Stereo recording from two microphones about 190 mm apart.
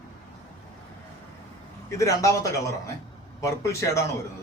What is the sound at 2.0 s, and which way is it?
A man's voice, 15° left (ahead or behind).